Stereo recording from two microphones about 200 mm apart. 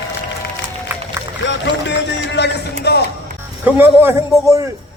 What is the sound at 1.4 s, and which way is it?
Speech, 60° left (ahead or behind).